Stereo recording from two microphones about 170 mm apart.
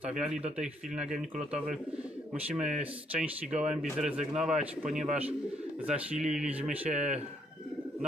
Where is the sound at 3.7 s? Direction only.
5° right (ahead or behind).